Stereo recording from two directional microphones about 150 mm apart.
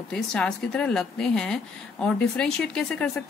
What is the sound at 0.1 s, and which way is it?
Speech, 5° left (ahead or behind).